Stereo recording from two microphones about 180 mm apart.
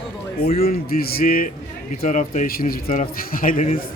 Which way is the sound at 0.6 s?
55° left (ahead or behind).